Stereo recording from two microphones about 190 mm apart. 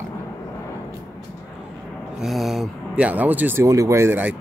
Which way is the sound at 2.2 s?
Centre (ahead or behind).